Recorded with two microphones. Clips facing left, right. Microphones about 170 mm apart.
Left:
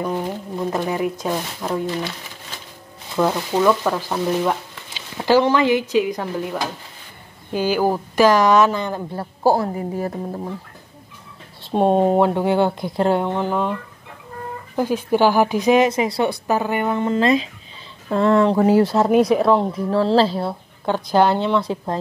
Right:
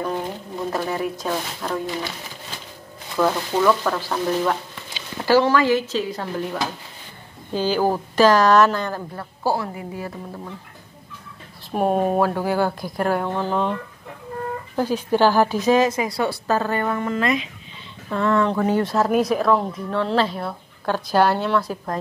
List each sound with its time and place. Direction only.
0.7 s a woman's voice: 15° left (ahead or behind)
3.2 s a woman's voice: 15° left (ahead or behind)
9.4 s speech: 45° left (ahead or behind)
11.6 s a woman's voice: 25° left (ahead or behind)
15.0 s a woman's voice: 15° left (ahead or behind)
19.1 s speech: centre (ahead or behind)
19.4 s speech: 30° left (ahead or behind)
20.8 s a woman's voice: 15° left (ahead or behind)